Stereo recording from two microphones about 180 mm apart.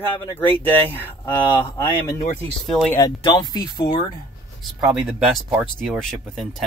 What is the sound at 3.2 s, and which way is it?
Speech, 25° left (ahead or behind).